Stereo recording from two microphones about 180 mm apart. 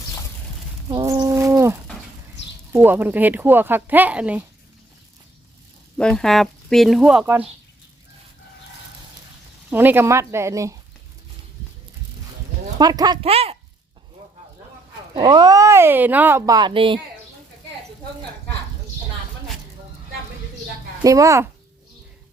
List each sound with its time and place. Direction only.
0.9 s a sound: 20° right (ahead or behind)
2.7 s speech: 10° right (ahead or behind)
6.0 s speech: 5° left (ahead or behind)
9.6 s speech: 10° right (ahead or behind)
12.8 s speech: 20° right (ahead or behind)
13.2 s speech: 35° right (ahead or behind)
15.1 s speech: 25° right (ahead or behind)
21.0 s speech: 20° right (ahead or behind)